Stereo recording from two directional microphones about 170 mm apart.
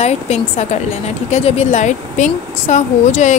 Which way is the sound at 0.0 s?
40° left (ahead or behind).